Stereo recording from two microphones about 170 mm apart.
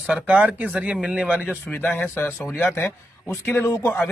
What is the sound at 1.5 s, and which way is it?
Speech, 10° left (ahead or behind).